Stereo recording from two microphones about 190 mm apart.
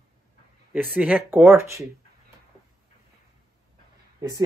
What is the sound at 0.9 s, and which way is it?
Speech, 5° right (ahead or behind).